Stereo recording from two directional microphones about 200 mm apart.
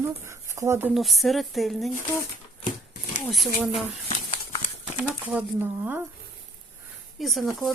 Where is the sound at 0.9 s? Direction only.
Centre (ahead or behind).